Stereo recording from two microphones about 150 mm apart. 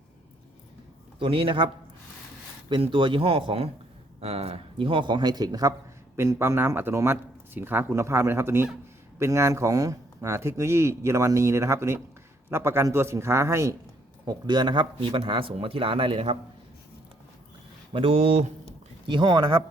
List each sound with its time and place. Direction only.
1.2 s a man's voice: 35° right (ahead or behind)
17.9 s speech: 40° right (ahead or behind)